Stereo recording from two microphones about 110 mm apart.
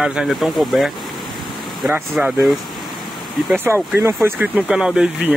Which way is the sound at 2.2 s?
10° right (ahead or behind).